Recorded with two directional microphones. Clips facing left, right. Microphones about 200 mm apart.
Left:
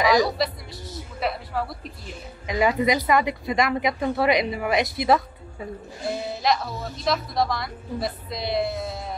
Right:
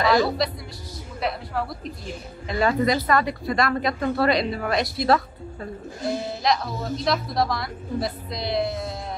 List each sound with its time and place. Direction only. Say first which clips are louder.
0.0 s speech: even; 15° left (ahead or behind)
1.2 s a sound: even; centre (ahead or behind)
2.4 s speech: even; 15° left (ahead or behind)
6.0 s speech: right 1 dB; centre (ahead or behind)